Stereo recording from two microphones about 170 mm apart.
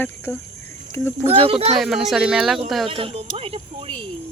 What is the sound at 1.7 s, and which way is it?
Speech, centre (ahead or behind).